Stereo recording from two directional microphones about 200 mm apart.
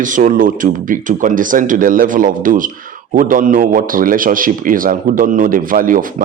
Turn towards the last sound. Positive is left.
turn(degrees=-45)  # may be behind; listen again after turning